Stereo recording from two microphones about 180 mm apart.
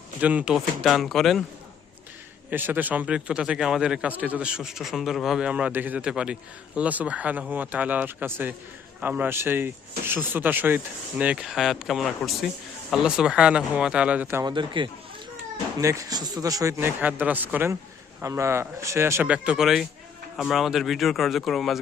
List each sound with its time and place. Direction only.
0.2 s a man's voice: 10° right (ahead or behind)
2.5 s a man's voice: 10° right (ahead or behind)
14.4 s a man's voice: 25° right (ahead or behind); by 21.8 s centre (ahead or behind)